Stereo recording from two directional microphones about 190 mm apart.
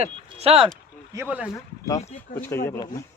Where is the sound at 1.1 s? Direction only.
10° right (ahead or behind).